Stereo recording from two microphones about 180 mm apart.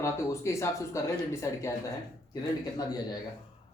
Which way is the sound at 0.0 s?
15° left (ahead or behind).